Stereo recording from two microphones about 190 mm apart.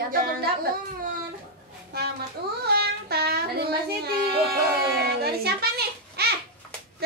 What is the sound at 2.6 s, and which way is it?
Speech, 55° right (ahead or behind).